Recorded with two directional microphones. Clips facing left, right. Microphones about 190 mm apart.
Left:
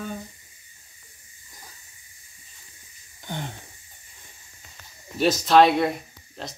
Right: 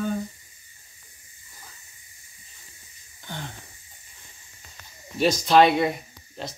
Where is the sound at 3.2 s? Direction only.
20° left (ahead or behind).